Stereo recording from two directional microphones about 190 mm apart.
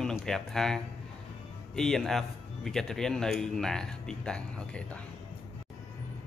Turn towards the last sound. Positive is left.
turn(degrees=5)  # may be behind; listen again after turning